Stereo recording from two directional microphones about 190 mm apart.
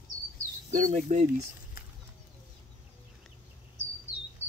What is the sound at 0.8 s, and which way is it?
Speech, 40° right (ahead or behind).